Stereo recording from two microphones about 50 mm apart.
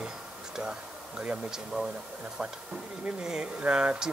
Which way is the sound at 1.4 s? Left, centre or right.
Centre.